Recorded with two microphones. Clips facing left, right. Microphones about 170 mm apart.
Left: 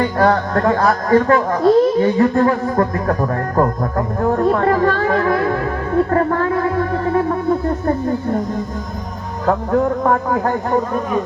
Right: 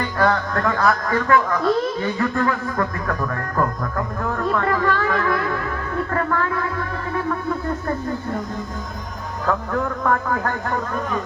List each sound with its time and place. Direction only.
0.2 s a man's voice: 35° left (ahead or behind)
9.5 s a man's voice: 30° left (ahead or behind)